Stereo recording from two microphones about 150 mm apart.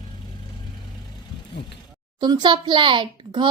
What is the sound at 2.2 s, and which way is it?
A child's voice, 30° right (ahead or behind).